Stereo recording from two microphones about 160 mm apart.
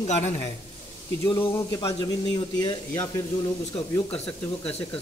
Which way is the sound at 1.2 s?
15° left (ahead or behind).